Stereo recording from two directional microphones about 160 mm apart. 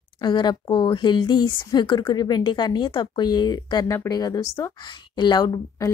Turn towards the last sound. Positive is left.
turn(degrees=25)  # may be behind; listen again after turning